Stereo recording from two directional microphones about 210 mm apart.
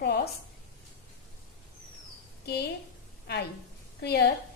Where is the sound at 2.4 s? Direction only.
50° left (ahead or behind).